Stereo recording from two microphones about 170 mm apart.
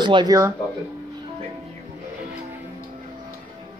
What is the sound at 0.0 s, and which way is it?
Speech, 25° right (ahead or behind).